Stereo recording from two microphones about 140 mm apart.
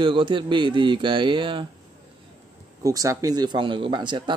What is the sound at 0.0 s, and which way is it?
Speech, 35° right (ahead or behind).